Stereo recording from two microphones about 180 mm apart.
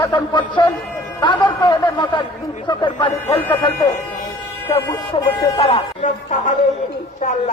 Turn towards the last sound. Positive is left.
turn(degrees=40)  # may be behind; listen again after turning